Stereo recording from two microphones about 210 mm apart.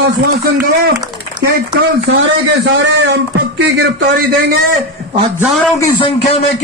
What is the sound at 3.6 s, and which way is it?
Speech, 50° right (ahead or behind).